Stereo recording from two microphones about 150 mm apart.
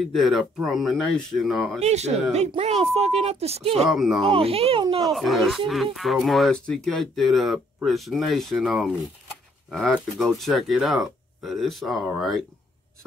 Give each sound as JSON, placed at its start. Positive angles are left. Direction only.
{"t": 0.0, "sound": "speech", "side_deg": 0}
{"t": 1.8, "sound": "speech", "side_deg": -45}
{"t": 3.8, "sound": "speech", "side_deg": 0}
{"t": 4.2, "sound": "a child's voice", "side_deg": -40}
{"t": 5.0, "sound": "speech", "side_deg": 0}